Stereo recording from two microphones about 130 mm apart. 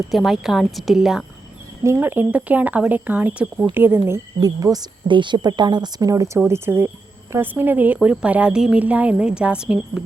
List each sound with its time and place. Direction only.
0.1 s a woman's voice: centre (ahead or behind)
1.8 s speech: 20° right (ahead or behind)